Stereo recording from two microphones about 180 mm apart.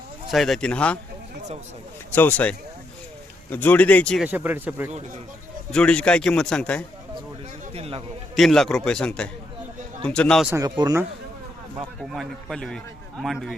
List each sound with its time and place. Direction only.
0.3 s a man's voice: centre (ahead or behind)
2.1 s speech: 10° left (ahead or behind)
4.2 s speech: 10° right (ahead or behind)
4.9 s speech: 40° right (ahead or behind)
5.7 s a man's voice: 5° left (ahead or behind)
7.7 s speech: 35° right (ahead or behind)
8.4 s a man's voice: centre (ahead or behind)
10.5 s speech: 20° right (ahead or behind)
12.1 s a man's voice: centre (ahead or behind)